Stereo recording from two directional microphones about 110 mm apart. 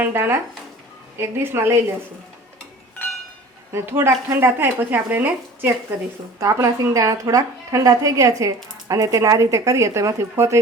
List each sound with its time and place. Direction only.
0.0 s speech: 20° right (ahead or behind)
3.7 s speech: 25° right (ahead or behind)
6.4 s speech: 30° right (ahead or behind)